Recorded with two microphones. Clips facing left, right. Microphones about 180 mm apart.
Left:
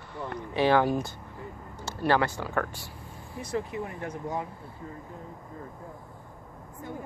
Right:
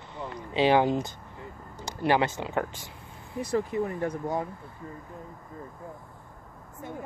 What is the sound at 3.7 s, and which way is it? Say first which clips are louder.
Speech: right 6 dB; 40° right (ahead or behind).